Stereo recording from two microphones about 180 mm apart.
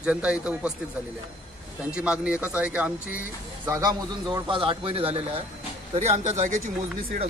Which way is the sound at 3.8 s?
25° right (ahead or behind).